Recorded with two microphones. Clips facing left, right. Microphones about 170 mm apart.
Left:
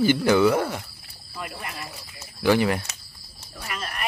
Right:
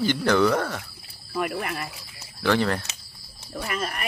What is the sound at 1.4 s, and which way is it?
Speech, 60° right (ahead or behind).